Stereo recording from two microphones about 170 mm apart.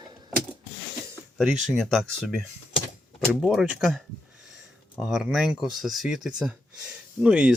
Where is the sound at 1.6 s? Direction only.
Centre (ahead or behind).